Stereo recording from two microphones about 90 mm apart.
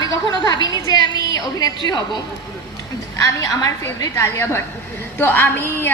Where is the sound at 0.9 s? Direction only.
50° left (ahead or behind).